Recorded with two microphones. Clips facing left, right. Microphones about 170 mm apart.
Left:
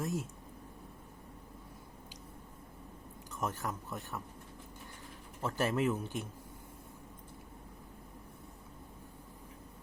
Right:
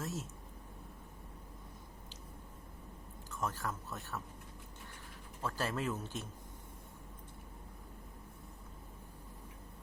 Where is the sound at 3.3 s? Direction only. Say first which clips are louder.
Left 2 dB; 20° left (ahead or behind).